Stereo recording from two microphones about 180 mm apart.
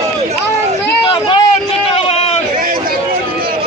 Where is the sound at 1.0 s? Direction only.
30° left (ahead or behind).